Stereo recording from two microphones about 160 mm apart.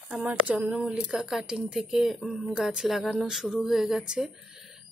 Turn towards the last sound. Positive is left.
turn(degrees=-5)  # may be behind; listen again after turning